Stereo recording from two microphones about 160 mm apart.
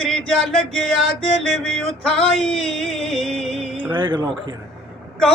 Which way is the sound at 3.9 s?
30° right (ahead or behind).